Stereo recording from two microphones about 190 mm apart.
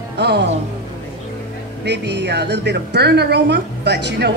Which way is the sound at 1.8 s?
60° right (ahead or behind).